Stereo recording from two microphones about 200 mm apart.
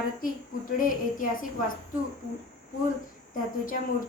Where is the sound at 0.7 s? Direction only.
45° left (ahead or behind).